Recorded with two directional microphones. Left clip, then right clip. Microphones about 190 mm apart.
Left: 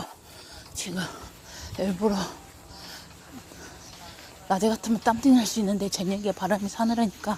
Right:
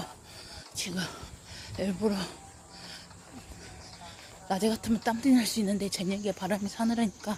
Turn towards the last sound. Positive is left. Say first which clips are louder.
# left 5 dB
turn(degrees=15)  # may be behind; listen again after turning